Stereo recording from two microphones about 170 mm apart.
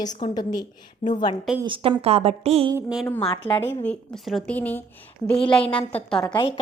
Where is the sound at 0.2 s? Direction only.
25° left (ahead or behind).